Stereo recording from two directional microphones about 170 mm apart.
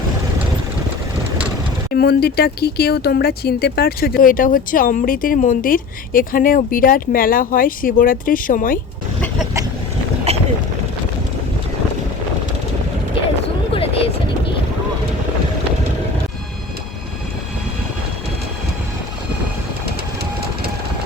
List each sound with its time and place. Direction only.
1.9 s speech: 65° left (ahead or behind)
10.3 s a sound: 40° right (ahead or behind)
13.7 s vehicle: 35° left (ahead or behind)